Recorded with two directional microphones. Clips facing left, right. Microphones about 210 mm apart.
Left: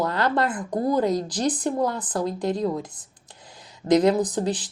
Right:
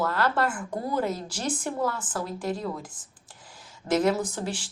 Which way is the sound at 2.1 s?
20° left (ahead or behind).